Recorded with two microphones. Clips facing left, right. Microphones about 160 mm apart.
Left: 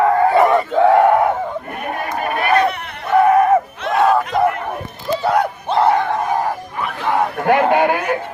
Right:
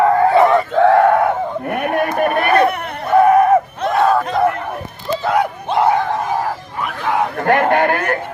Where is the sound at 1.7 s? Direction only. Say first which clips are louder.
Right 7 dB; 65° right (ahead or behind).